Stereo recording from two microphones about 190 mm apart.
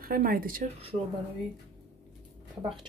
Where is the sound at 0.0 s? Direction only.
50° right (ahead or behind).